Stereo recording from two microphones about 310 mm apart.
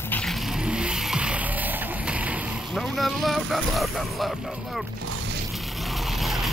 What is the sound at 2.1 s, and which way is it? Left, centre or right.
Speech, centre.